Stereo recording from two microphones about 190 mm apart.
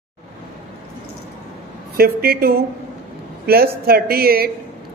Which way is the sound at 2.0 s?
55° right (ahead or behind).